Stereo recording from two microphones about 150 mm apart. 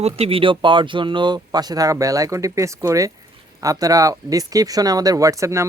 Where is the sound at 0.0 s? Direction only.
40° right (ahead or behind).